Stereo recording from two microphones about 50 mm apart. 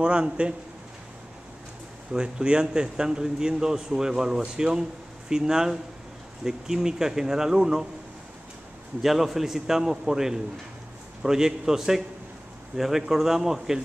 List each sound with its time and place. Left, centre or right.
0.0 s a man's voice: right
2.1 s speech: centre
9.0 s speech: centre